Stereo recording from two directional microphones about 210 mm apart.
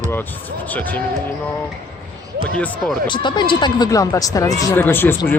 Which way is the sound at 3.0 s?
20° left (ahead or behind).